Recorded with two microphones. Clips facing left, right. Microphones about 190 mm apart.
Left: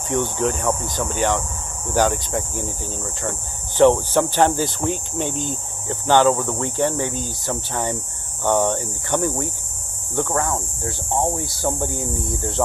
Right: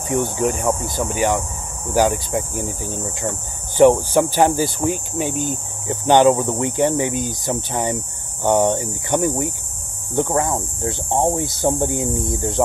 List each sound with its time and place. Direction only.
0.1 s speech: 10° right (ahead or behind)